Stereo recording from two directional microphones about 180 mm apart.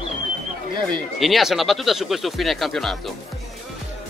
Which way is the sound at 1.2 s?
Centre (ahead or behind).